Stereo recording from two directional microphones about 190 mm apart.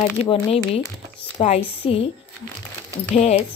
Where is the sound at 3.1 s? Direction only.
35° left (ahead or behind).